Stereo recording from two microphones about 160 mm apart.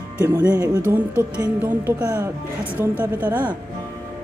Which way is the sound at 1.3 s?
10° right (ahead or behind).